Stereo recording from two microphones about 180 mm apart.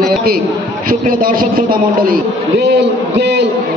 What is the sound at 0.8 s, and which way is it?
A man's voice, 50° right (ahead or behind).